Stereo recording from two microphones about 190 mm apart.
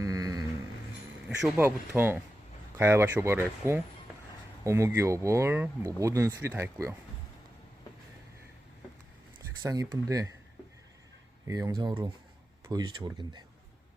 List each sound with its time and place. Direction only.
0.0 s a sound: 20° right (ahead or behind)
1.5 s speech: 10° right (ahead or behind)
9.6 s speech: 15° right (ahead or behind)
11.4 s speech: 20° right (ahead or behind)